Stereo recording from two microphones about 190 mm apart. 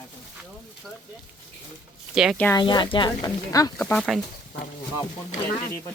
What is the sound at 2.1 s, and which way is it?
Speech, centre (ahead or behind).